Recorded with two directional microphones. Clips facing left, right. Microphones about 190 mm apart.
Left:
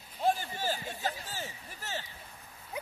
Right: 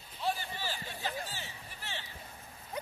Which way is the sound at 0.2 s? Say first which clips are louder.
Left 5 dB; 45° left (ahead or behind).